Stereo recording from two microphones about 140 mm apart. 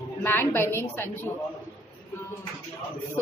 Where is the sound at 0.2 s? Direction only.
15° left (ahead or behind).